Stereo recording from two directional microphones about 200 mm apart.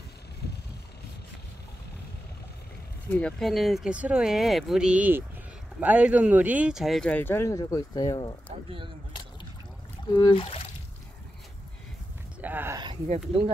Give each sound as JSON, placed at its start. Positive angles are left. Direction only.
{"t": 3.1, "sound": "speech", "side_deg": 5}
{"t": 8.6, "sound": "speech", "side_deg": -25}
{"t": 10.1, "sound": "speech", "side_deg": 25}
{"t": 12.4, "sound": "speech", "side_deg": -10}